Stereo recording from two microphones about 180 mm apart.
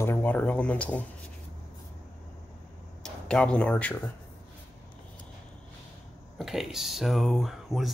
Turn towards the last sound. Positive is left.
turn(degrees=0)  # may be behind; listen again after turning